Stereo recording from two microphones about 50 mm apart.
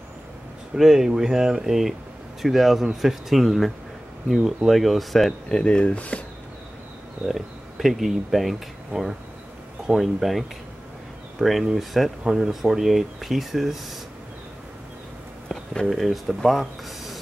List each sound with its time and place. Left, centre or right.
0.7 s speech: centre
5.5 s speech: centre
7.2 s speech: centre
15.4 s a sound: centre
15.9 s speech: centre